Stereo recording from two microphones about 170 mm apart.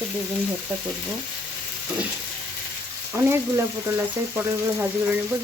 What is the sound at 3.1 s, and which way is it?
Speech, 15° right (ahead or behind).